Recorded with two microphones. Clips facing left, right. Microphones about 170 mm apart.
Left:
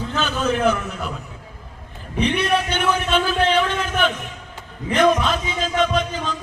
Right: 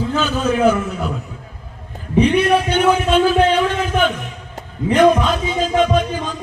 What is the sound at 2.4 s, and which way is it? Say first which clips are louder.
Speech: right 6 dB; 50° right (ahead or behind).